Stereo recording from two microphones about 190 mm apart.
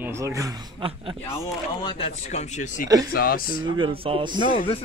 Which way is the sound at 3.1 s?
50° left (ahead or behind).